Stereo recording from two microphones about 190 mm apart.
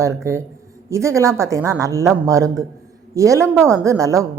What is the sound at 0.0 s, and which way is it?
A woman's voice, 15° right (ahead or behind).